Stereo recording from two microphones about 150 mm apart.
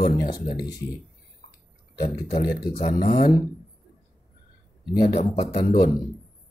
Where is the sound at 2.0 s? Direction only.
80° left.